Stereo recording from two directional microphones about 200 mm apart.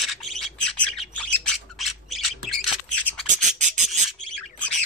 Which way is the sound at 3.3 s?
35° right (ahead or behind).